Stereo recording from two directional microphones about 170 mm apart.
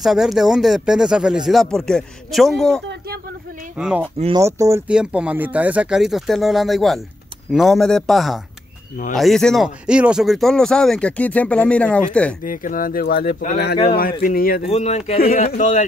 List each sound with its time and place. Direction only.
0.0 s speech: centre (ahead or behind)
4.4 s speech: 15° right (ahead or behind); by 12.4 s 5° left (ahead or behind)
12.4 s speech: 55° left (ahead or behind)
14.7 s speech: 40° left (ahead or behind)
15.1 s speech: 60° left (ahead or behind)
15.4 s speech: 45° left (ahead or behind)